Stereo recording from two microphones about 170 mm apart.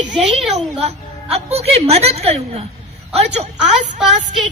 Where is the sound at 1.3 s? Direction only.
35° right (ahead or behind).